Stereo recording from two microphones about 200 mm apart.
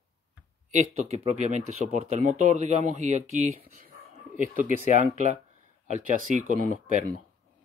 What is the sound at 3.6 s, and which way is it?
Speech, 45° right (ahead or behind).